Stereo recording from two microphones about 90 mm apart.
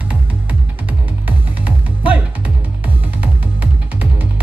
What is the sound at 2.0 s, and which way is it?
Music, 15° right (ahead or behind).